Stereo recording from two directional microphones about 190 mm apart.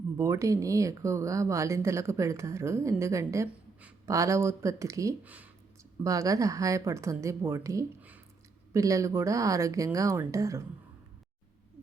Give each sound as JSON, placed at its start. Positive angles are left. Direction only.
{"t": 0.2, "sound": "speech", "side_deg": -15}